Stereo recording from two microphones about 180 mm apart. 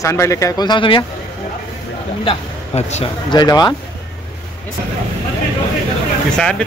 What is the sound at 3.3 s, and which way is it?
Speech, 25° left (ahead or behind).